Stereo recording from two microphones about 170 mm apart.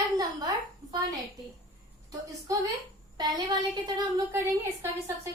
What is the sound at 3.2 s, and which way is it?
A woman's voice, 25° right (ahead or behind).